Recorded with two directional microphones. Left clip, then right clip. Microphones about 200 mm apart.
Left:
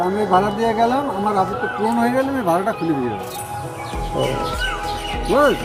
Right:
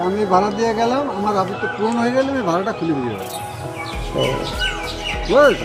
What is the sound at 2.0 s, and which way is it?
Speech, 15° left (ahead or behind).